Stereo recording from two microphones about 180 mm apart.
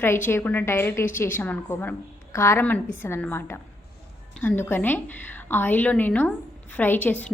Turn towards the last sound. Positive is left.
turn(degrees=10)  # may be behind; listen again after turning